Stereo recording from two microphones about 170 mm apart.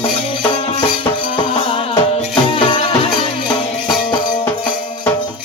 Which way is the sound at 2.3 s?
30° left (ahead or behind).